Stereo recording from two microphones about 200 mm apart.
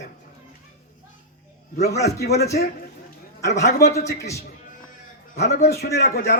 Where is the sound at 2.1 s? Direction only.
50° left (ahead or behind).